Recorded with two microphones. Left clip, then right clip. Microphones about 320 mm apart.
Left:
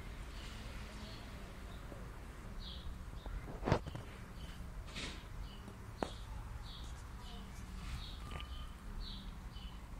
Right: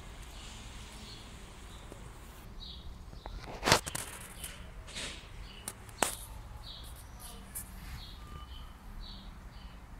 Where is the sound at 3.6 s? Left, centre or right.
Right.